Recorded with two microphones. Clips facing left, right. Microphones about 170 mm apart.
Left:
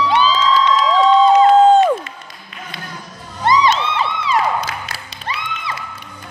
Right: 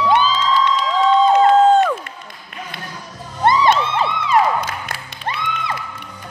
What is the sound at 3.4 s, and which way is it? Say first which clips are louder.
Music: right 1 dB; 55° right (ahead or behind).